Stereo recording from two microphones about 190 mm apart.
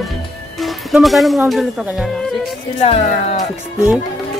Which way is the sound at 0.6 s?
Centre (ahead or behind).